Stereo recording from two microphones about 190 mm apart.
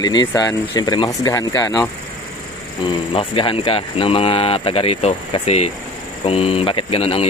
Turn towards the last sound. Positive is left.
turn(degrees=30)  # may be behind; listen again after turning